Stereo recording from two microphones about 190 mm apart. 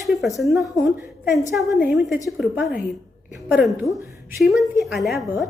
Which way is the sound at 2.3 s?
5° right (ahead or behind).